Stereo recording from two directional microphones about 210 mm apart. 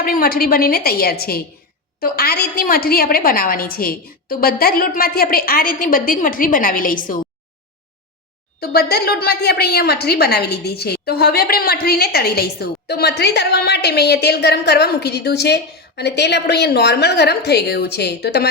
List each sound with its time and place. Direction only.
0.0 s a woman's voice: 45° left (ahead or behind)
8.6 s a woman's voice: 50° left (ahead or behind)